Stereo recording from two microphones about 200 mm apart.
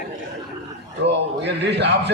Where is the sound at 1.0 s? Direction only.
60° right (ahead or behind).